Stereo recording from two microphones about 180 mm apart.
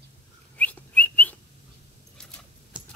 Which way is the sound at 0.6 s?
10° left (ahead or behind).